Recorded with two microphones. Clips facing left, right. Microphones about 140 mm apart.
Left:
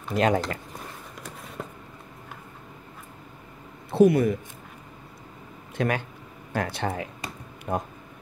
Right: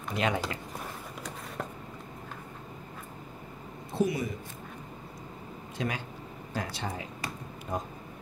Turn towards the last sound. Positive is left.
turn(degrees=60)  # may be behind; listen again after turning